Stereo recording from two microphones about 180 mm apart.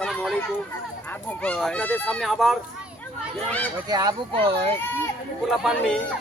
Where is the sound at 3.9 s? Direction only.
20° right (ahead or behind).